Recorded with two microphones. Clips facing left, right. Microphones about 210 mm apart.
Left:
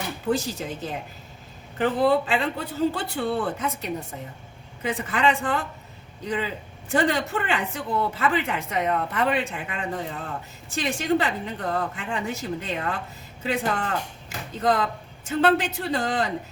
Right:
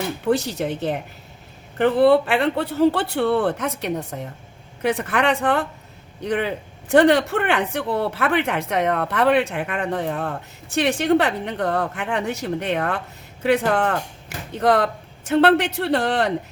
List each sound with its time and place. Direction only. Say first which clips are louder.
0.3 s a woman's voice: right 4 dB; 70° right (ahead or behind)